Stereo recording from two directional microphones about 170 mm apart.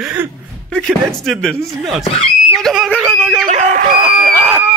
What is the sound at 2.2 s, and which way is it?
Screaming, centre (ahead or behind).